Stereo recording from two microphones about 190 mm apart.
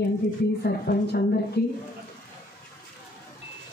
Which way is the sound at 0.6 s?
55° left (ahead or behind).